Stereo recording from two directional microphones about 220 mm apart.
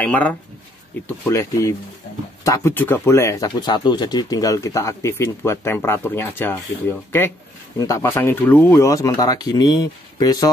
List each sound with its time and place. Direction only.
0.0 s speech: 5° left (ahead or behind)